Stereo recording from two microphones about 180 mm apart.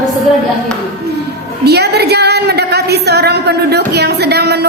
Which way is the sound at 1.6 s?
65° right (ahead or behind).